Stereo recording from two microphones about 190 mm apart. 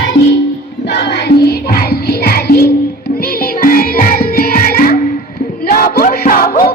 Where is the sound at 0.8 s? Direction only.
60° left (ahead or behind).